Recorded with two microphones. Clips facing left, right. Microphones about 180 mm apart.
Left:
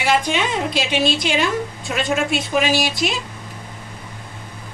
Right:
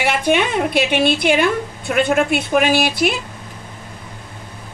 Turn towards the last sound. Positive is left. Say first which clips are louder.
# right 4 dB
turn(degrees=-55)  # may be behind; listen again after turning